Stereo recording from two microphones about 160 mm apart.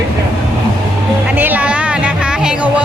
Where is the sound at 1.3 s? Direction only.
10° right (ahead or behind).